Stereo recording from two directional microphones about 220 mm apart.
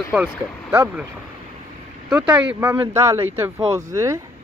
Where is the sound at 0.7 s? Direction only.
10° right (ahead or behind).